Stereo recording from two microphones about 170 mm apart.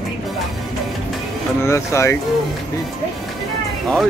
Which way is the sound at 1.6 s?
15° left (ahead or behind).